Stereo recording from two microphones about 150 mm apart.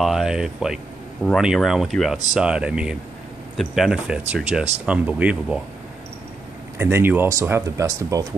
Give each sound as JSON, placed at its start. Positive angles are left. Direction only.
{"t": 0.0, "sound": "speech", "side_deg": 0}
{"t": 6.8, "sound": "speech", "side_deg": -15}